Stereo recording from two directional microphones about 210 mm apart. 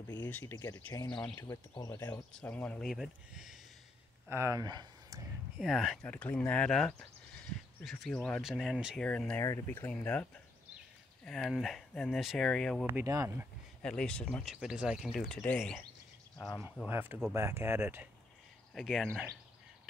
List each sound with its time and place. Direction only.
0.1 s speech: 10° left (ahead or behind)
4.3 s speech: 15° right (ahead or behind)
5.6 s speech: centre (ahead or behind)
11.2 s speech: centre (ahead or behind)
12.8 s speech: 15° right (ahead or behind)
13.8 s speech: 5° left (ahead or behind)
16.9 s speech: 10° right (ahead or behind)
18.8 s speech: centre (ahead or behind)